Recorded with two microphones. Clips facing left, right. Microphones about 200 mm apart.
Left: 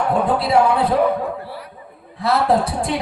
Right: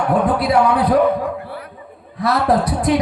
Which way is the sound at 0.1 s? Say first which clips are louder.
Right 2 dB; 25° left (ahead or behind).